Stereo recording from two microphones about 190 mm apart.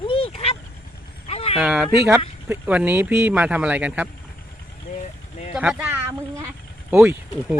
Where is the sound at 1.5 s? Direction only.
5° right (ahead or behind).